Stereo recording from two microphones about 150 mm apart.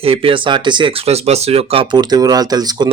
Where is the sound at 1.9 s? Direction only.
30° right (ahead or behind).